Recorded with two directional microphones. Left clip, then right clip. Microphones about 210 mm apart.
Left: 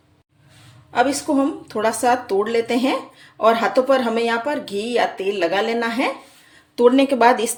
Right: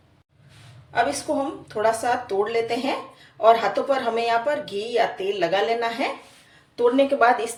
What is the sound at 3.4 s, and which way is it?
Speech, 55° left (ahead or behind).